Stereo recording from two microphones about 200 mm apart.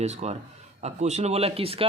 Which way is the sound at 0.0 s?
35° right (ahead or behind).